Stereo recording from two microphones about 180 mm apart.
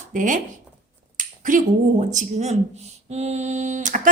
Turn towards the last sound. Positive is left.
turn(degrees=-45)  # may be behind; listen again after turning